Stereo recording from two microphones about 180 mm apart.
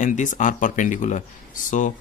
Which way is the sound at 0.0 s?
45° left (ahead or behind).